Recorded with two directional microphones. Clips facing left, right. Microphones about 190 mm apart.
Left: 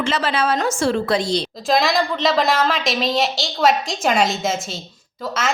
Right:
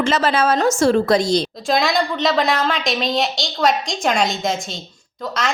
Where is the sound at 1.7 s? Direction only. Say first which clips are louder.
Left 2 dB; centre (ahead or behind).